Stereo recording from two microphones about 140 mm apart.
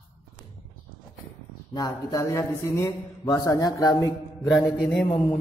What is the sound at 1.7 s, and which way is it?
Speech, 30° left (ahead or behind).